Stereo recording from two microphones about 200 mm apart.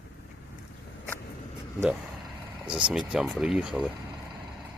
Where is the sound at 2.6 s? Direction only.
5° right (ahead or behind).